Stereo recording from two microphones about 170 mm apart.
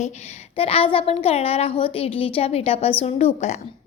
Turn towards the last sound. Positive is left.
turn(degrees=40)  # may be behind; listen again after turning